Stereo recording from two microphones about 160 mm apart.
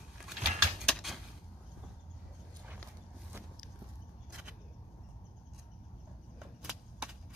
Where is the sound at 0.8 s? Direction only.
Centre (ahead or behind).